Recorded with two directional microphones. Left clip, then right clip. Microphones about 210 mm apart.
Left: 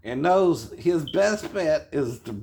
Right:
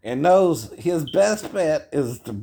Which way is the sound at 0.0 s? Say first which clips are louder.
Right 4 dB; 50° right (ahead or behind).